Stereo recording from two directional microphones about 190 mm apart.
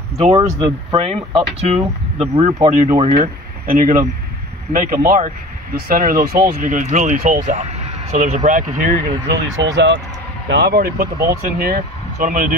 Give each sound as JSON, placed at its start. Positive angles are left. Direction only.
{"t": 0.4, "sound": "speech", "side_deg": -15}
{"t": 0.9, "sound": "speech", "side_deg": -30}
{"t": 3.0, "sound": "speech", "side_deg": -35}
{"t": 3.6, "sound": "speech", "side_deg": -45}
{"t": 9.6, "sound": "speech", "side_deg": -65}